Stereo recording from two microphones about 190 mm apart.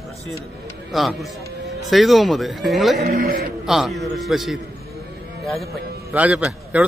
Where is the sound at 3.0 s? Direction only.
50° right (ahead or behind).